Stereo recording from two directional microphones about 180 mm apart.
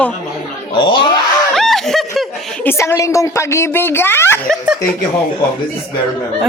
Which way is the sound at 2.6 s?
15° left (ahead or behind).